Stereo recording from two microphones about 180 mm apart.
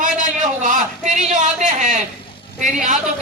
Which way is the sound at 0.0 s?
45° right (ahead or behind).